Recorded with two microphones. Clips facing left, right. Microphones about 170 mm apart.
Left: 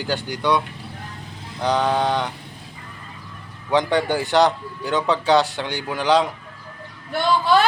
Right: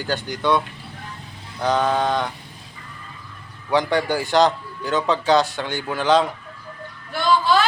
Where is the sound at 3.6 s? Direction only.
20° left (ahead or behind).